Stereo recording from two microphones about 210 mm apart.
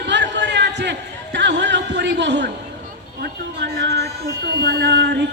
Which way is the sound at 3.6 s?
55° right (ahead or behind).